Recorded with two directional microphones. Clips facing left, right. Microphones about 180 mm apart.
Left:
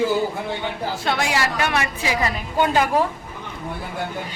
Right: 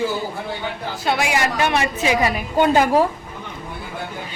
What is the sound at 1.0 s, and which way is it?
A woman's voice, 10° right (ahead or behind).